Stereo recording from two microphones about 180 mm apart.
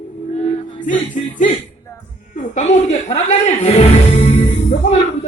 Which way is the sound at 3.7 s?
35° left (ahead or behind).